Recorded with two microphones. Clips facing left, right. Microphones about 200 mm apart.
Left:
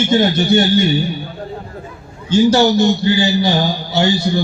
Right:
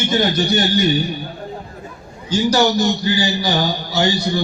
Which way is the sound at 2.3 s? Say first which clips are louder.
Left 4 dB; 25° left (ahead or behind).